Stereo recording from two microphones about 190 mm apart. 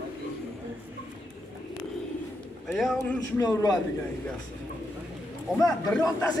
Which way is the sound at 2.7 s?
Centre (ahead or behind).